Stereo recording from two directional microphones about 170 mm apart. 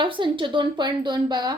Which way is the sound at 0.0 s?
30° right (ahead or behind).